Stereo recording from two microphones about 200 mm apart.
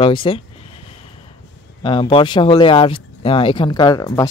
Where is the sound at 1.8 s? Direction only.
25° left (ahead or behind).